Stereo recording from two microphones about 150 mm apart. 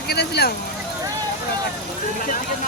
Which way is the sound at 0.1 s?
90° left.